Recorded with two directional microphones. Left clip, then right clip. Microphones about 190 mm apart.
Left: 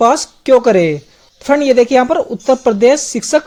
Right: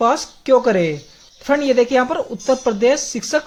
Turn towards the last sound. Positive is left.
turn(degrees=30)  # may be behind; listen again after turning